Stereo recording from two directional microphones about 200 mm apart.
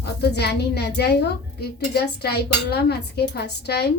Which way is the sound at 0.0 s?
55° left (ahead or behind).